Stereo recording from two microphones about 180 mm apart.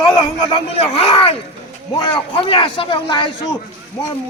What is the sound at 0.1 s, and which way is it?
A man's voice, 25° left (ahead or behind).